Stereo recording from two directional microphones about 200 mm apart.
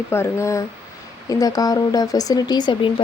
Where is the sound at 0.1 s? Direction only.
15° left (ahead or behind).